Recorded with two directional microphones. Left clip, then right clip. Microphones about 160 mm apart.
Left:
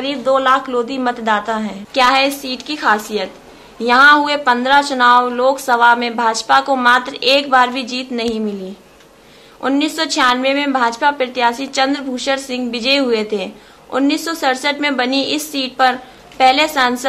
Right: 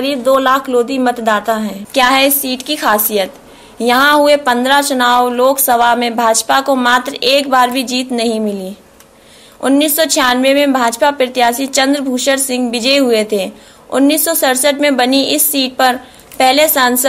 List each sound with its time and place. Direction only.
0.0 s a woman's voice: 25° right (ahead or behind)
9.6 s a woman's voice: 25° right (ahead or behind)